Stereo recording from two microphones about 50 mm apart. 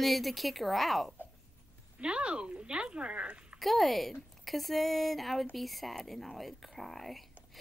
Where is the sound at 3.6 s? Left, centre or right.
Centre.